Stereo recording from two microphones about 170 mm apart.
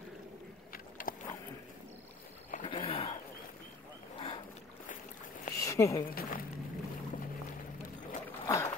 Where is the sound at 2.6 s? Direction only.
30° left (ahead or behind).